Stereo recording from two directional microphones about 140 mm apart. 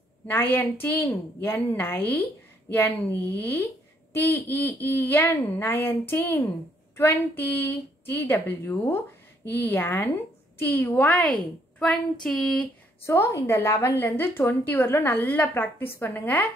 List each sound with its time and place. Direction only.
0.3 s speech: 15° left (ahead or behind)
13.0 s speech: 20° left (ahead or behind)